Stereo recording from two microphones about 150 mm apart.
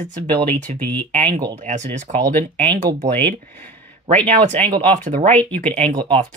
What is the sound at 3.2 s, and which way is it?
Speech, 10° left (ahead or behind).